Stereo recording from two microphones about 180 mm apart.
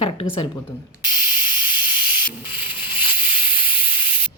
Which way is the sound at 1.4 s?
10° right (ahead or behind).